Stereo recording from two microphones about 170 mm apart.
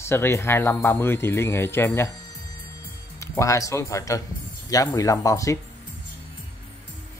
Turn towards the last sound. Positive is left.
turn(degrees=20)  # may be behind; listen again after turning